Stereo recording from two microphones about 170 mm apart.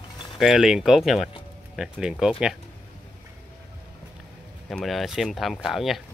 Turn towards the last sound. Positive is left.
turn(degrees=0)  # may be behind; listen again after turning